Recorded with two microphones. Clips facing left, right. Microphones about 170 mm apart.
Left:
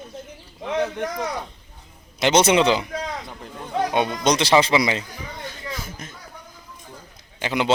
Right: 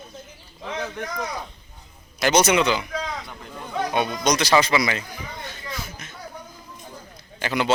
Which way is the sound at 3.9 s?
25° left (ahead or behind).